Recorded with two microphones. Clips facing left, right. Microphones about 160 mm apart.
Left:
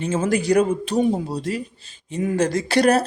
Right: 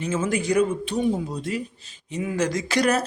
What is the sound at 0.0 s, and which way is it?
Speech, 30° left (ahead or behind).